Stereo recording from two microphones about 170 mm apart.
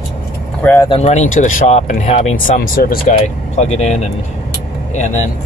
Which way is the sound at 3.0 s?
40° left (ahead or behind).